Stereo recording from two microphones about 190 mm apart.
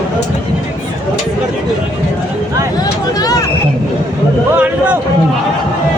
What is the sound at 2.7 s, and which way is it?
Vehicle, 20° left (ahead or behind).